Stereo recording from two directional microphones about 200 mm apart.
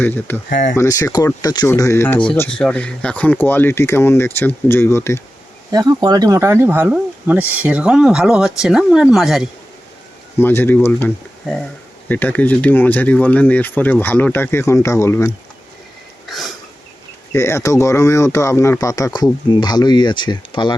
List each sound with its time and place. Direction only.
0.0 s speech: 10° left (ahead or behind)
5.7 s speech: 20° right (ahead or behind); by 9.5 s centre (ahead or behind)
10.3 s speech: 10° left (ahead or behind)
16.3 s a sound: centre (ahead or behind)
17.3 s speech: 15° left (ahead or behind)